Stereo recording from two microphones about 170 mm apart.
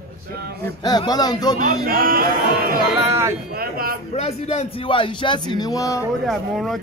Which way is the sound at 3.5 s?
60° right (ahead or behind).